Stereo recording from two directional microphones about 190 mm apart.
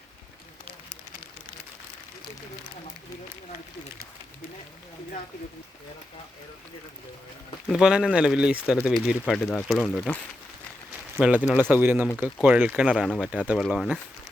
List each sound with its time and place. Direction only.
7.7 s speech: 5° right (ahead or behind)
11.2 s speech: 5° right (ahead or behind)